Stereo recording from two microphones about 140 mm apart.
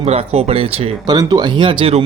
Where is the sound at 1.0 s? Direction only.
30° right (ahead or behind).